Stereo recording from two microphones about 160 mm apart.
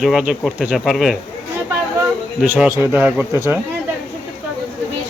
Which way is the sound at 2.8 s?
10° right (ahead or behind).